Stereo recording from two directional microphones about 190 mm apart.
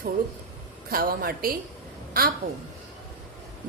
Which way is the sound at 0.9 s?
50° right (ahead or behind).